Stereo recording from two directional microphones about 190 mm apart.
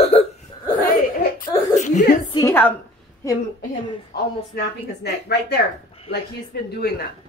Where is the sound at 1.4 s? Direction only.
40° left (ahead or behind).